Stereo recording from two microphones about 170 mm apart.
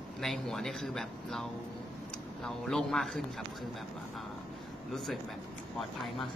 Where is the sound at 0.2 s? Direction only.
5° left (ahead or behind).